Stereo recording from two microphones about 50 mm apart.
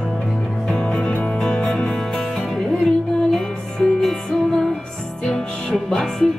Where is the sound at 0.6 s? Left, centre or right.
Centre.